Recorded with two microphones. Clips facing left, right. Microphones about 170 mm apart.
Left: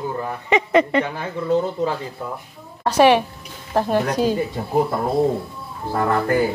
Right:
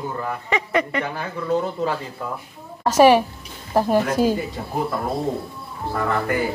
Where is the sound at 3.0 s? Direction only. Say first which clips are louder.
Right 1 dB; 10° right (ahead or behind).